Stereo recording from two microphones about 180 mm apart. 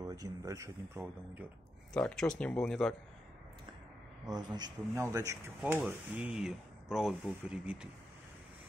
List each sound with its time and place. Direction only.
0.0 s speech: 20° right (ahead or behind)
2.0 s speech: 5° left (ahead or behind)
4.3 s a man's voice: 25° right (ahead or behind)
5.9 s speech: 5° right (ahead or behind)